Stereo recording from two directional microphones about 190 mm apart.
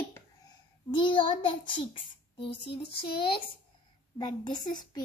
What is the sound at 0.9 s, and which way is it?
Speech, 25° left (ahead or behind).